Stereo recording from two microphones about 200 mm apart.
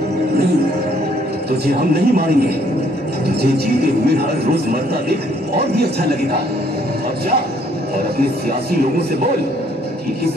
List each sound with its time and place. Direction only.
1.7 s a man's voice: 50° right (ahead or behind)
5.6 s a man's voice: 55° right (ahead or behind)